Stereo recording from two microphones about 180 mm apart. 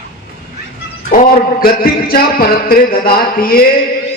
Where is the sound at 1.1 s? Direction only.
50° left (ahead or behind).